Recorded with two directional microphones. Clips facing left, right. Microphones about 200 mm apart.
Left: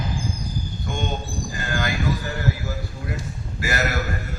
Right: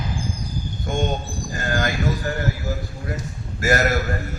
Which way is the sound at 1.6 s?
45° right (ahead or behind).